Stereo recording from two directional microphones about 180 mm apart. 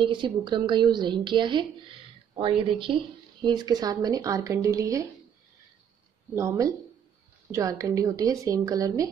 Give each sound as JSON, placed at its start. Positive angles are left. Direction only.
{"t": 0.0, "sound": "a woman's voice", "side_deg": -25}
{"t": 6.3, "sound": "a woman's voice", "side_deg": -15}